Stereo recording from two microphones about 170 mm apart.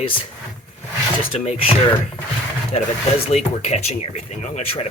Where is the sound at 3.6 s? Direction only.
40° left (ahead or behind).